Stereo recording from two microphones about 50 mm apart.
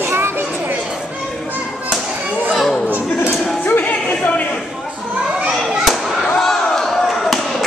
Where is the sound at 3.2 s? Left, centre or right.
Left.